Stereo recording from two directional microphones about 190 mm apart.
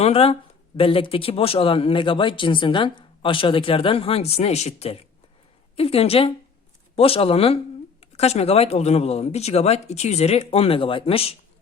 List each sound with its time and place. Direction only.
0.0 s speech: 30° left (ahead or behind)